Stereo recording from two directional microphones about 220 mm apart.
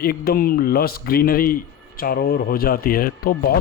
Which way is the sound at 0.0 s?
45° left (ahead or behind).